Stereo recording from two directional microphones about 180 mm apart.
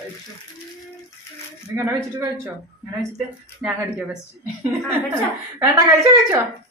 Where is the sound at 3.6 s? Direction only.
5° right (ahead or behind).